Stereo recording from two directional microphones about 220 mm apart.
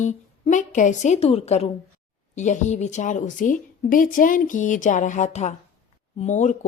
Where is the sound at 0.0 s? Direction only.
35° left (ahead or behind).